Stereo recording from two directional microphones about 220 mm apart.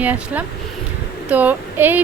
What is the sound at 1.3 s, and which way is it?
Child singing, 5° right (ahead or behind).